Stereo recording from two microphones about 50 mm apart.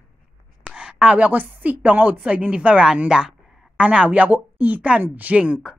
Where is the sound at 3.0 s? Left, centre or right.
Centre.